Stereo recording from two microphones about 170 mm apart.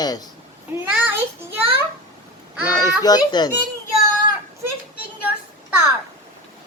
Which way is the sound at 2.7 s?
20° left (ahead or behind).